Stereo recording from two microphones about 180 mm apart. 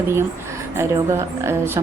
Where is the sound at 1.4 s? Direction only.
15° right (ahead or behind).